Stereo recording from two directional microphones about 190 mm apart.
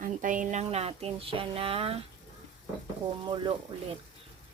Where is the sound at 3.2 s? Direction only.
25° right (ahead or behind).